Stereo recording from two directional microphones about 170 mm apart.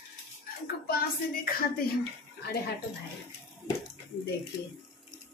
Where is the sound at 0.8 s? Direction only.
60° left (ahead or behind).